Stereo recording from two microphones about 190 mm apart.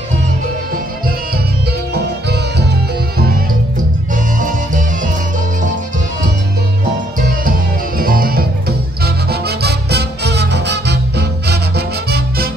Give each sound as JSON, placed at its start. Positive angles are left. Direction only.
{"t": 2.2, "sound": "music", "side_deg": -60}
{"t": 4.1, "sound": "music", "side_deg": -45}
{"t": 8.0, "sound": "music", "side_deg": -50}